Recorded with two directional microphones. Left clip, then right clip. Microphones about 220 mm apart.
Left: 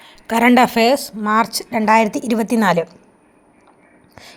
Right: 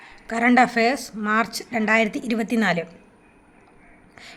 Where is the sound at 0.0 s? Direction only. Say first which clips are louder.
Left 7 dB; 30° left (ahead or behind).